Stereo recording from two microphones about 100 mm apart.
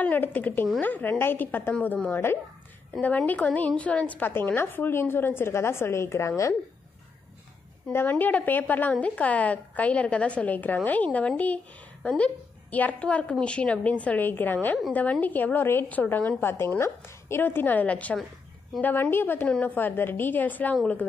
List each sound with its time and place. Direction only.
0.0 s a woman's voice: 15° left (ahead or behind)
7.9 s a woman's voice: 20° left (ahead or behind)